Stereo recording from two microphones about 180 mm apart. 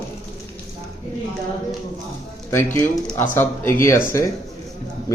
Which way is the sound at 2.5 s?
15° left (ahead or behind).